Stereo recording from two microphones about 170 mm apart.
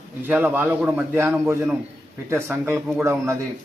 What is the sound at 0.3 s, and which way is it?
A man's voice, 10° right (ahead or behind).